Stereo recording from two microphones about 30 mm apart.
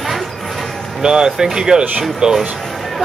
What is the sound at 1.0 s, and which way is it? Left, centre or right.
Speech, right.